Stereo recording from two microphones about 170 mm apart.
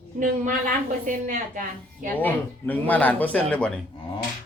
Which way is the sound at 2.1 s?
10° left (ahead or behind).